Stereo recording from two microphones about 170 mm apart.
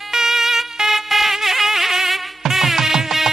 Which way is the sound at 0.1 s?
5° right (ahead or behind).